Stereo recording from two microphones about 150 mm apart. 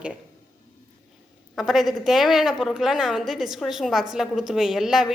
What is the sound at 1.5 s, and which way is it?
A woman's voice, centre (ahead or behind).